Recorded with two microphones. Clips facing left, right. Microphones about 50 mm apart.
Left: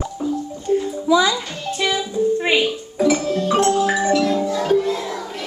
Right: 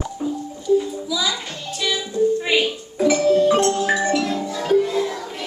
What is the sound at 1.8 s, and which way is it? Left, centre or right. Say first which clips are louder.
Music: even; left.